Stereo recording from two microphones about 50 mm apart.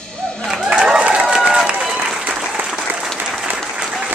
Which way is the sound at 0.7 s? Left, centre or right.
Centre.